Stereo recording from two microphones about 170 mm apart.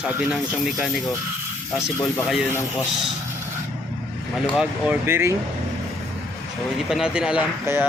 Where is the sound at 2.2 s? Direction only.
5° right (ahead or behind).